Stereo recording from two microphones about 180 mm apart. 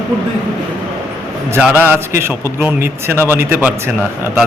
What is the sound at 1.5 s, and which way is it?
A man's voice, 10° right (ahead or behind).